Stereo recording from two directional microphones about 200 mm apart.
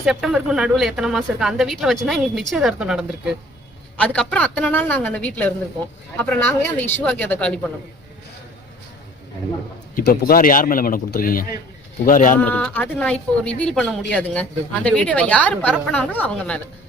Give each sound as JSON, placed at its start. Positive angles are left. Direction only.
{"t": 0.0, "sound": "a woman's voice", "side_deg": 0}
{"t": 9.9, "sound": "speech", "side_deg": 45}
{"t": 12.4, "sound": "a woman's voice", "side_deg": 5}